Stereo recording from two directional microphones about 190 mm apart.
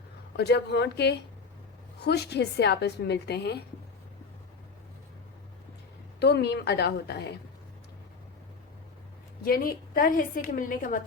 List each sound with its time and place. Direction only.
0.3 s a woman's voice: 60° left (ahead or behind)
6.1 s a woman's voice: 60° left (ahead or behind)
9.4 s a woman's voice: 50° left (ahead or behind)